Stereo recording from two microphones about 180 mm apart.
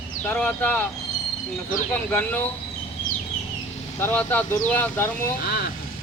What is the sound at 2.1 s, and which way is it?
Speech, 10° left (ahead or behind).